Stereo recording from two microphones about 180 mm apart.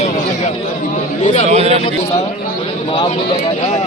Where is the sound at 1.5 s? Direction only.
35° right (ahead or behind).